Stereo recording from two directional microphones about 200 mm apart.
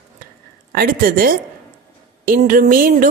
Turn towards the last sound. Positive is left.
turn(degrees=-45)  # may be behind; listen again after turning